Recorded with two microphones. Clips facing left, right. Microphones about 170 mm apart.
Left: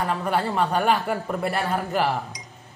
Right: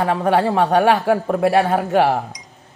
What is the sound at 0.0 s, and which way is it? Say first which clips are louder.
Speech: right 7 dB; 90° right.